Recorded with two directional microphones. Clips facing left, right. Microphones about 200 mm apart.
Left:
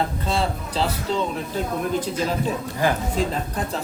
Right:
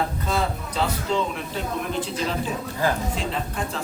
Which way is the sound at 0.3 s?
30° left (ahead or behind).